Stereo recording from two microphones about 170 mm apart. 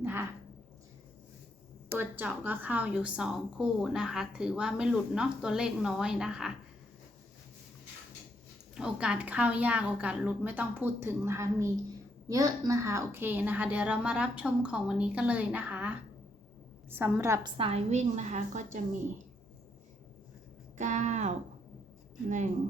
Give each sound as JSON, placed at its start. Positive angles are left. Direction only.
{"t": 0.0, "sound": "a sound", "side_deg": -10}
{"t": 2.0, "sound": "a woman's voice", "side_deg": -10}
{"t": 8.7, "sound": "a woman's voice", "side_deg": -5}
{"t": 17.6, "sound": "a woman's voice", "side_deg": -35}
{"t": 20.7, "sound": "speech", "side_deg": -45}